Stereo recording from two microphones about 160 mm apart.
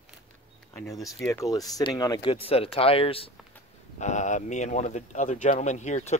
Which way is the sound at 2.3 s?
35° left (ahead or behind).